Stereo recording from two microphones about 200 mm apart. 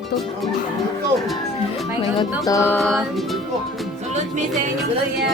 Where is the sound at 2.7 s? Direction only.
Centre (ahead or behind).